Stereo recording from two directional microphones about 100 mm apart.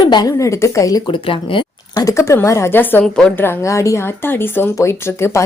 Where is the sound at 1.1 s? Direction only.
60° left (ahead or behind).